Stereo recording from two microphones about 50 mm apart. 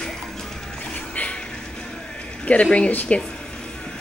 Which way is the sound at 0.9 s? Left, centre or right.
Left.